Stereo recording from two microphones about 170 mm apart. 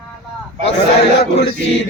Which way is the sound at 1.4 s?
90° left.